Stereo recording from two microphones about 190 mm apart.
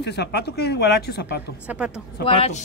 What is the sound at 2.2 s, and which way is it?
Speech, 30° left (ahead or behind).